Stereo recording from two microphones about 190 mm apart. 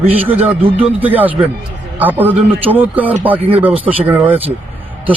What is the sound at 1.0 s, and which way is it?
A man's voice, 10° right (ahead or behind).